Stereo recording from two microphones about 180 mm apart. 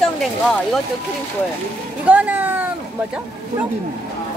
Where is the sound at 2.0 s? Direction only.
10° right (ahead or behind).